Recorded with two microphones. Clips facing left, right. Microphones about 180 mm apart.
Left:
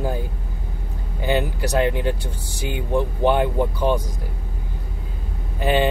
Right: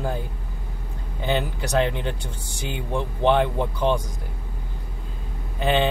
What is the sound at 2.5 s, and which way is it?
Speech, 55° left (ahead or behind).